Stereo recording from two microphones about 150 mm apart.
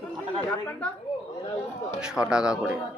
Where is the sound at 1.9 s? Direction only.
5° right (ahead or behind).